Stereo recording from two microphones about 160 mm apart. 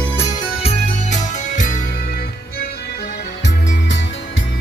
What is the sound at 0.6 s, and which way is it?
Music, 40° left (ahead or behind).